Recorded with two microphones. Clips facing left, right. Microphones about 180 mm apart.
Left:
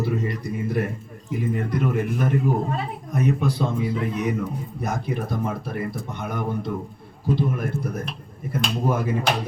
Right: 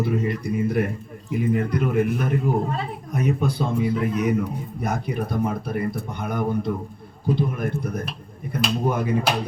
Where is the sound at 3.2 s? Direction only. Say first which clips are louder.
Left 1 dB; centre (ahead or behind).